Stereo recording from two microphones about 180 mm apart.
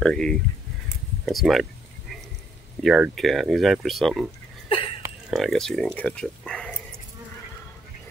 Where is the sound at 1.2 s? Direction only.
Centre (ahead or behind).